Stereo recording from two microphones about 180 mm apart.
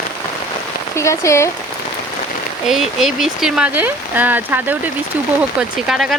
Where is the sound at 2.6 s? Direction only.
Centre (ahead or behind).